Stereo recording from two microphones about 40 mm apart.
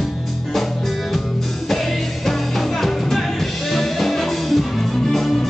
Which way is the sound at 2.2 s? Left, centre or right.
Centre.